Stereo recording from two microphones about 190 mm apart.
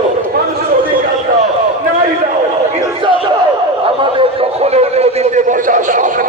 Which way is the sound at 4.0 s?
30° right (ahead or behind).